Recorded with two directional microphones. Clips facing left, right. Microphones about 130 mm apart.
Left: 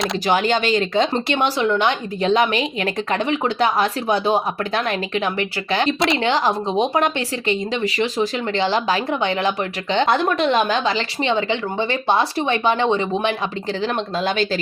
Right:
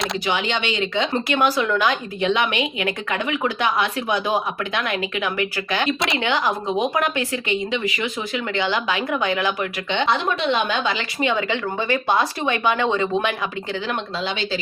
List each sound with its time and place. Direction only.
0.3 s speech: 45° left (ahead or behind)
10.1 s a woman's voice: 45° left (ahead or behind); by 13.3 s 20° left (ahead or behind)
14.2 s speech: 45° left (ahead or behind)